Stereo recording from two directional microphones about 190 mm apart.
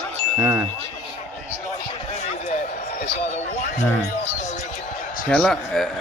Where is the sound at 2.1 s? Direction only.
35° left (ahead or behind).